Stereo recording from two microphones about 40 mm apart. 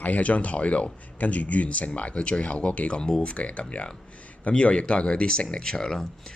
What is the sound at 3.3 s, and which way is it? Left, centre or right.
Speech, left.